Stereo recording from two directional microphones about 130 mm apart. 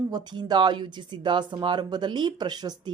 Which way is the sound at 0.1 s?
35° right (ahead or behind).